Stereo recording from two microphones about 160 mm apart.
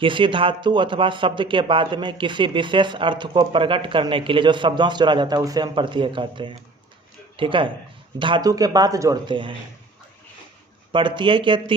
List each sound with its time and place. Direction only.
0.0 s speech: 30° right (ahead or behind)
10.9 s speech: 30° right (ahead or behind)